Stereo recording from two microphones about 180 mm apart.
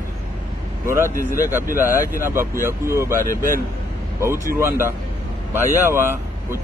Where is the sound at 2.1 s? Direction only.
15° right (ahead or behind).